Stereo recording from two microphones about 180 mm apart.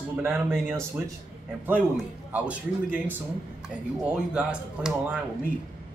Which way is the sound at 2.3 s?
10° right (ahead or behind).